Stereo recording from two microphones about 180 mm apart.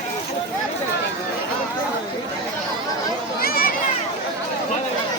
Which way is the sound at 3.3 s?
55° left (ahead or behind).